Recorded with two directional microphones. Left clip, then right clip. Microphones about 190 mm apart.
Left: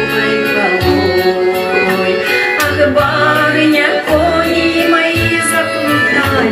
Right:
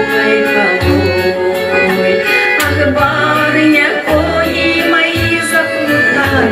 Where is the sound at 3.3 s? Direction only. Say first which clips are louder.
Even; 20° left (ahead or behind).